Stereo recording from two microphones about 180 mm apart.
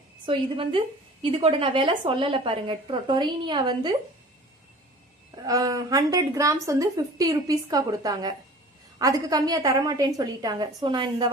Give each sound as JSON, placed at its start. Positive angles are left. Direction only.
{"t": 0.3, "sound": "a woman's voice", "side_deg": -30}
{"t": 5.4, "sound": "a woman's voice", "side_deg": -20}